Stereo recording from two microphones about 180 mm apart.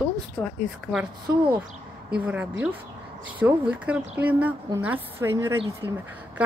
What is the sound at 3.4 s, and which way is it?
Speech, 5° right (ahead or behind).